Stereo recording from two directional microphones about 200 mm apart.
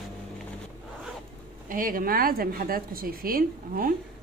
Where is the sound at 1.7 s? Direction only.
45° right (ahead or behind).